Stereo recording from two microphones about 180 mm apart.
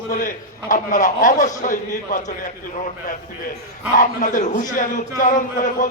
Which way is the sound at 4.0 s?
45° left (ahead or behind).